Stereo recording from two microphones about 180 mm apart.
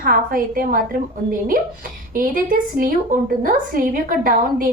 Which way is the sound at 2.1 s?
50° right (ahead or behind).